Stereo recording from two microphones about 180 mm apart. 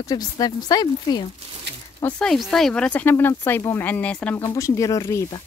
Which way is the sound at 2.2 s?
Centre (ahead or behind).